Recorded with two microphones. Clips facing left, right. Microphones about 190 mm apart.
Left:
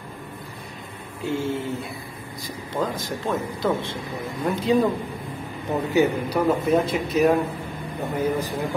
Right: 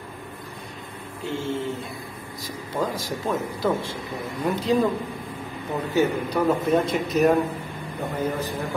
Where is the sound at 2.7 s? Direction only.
10° right (ahead or behind).